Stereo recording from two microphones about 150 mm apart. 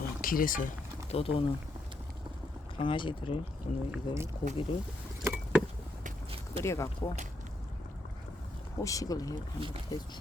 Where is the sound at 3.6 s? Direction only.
50° left (ahead or behind).